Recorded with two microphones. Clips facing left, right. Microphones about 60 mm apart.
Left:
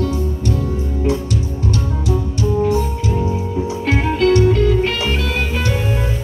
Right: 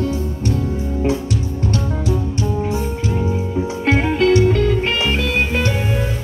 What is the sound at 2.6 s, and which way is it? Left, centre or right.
Music, right.